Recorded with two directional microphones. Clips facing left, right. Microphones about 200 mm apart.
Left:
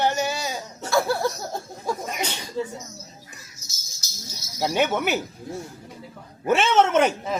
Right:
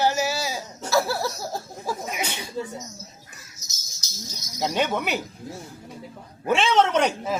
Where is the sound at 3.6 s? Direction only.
10° left (ahead or behind).